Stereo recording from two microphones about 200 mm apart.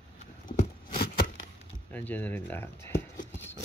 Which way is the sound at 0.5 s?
40° left (ahead or behind).